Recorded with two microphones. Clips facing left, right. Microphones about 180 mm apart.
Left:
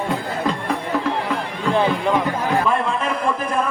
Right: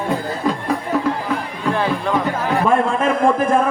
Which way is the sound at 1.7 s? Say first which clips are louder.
Left 2 dB; 20° left (ahead or behind).